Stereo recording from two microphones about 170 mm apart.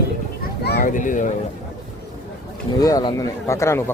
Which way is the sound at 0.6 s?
70° left (ahead or behind).